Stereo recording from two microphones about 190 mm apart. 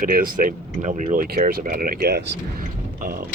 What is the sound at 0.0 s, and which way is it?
Speech, 50° right (ahead or behind).